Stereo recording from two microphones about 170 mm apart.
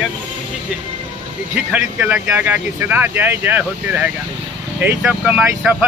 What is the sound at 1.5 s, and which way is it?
Speech, 10° right (ahead or behind).